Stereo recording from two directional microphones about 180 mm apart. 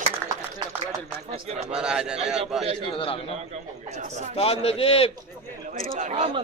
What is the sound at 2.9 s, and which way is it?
Speech, 30° left (ahead or behind).